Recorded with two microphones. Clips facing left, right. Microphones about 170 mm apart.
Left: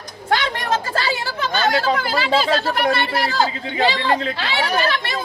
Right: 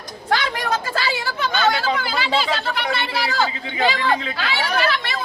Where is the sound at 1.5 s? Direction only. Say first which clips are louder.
Left 2 dB; 40° left (ahead or behind).